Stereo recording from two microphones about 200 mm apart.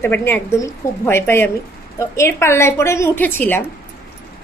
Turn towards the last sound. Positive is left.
turn(degrees=10)  # may be behind; listen again after turning